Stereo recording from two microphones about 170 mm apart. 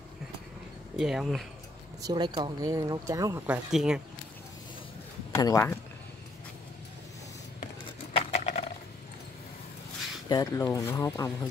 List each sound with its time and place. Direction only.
0.9 s speech: 5° right (ahead or behind)
2.0 s speech: 25° right (ahead or behind)
3.4 s speech: 5° right (ahead or behind)
5.3 s speech: 20° left (ahead or behind)
7.6 s a sound: 40° left (ahead or behind)
10.2 s speech: 20° left (ahead or behind)